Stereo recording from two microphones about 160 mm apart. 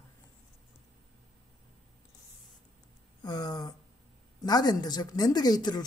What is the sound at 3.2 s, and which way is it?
A woman's voice, 25° left (ahead or behind).